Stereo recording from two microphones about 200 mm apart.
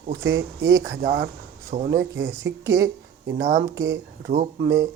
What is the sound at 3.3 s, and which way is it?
Speech, 60° right (ahead or behind).